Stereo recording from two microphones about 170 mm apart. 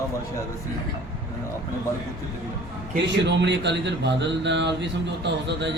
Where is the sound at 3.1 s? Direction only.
90° right.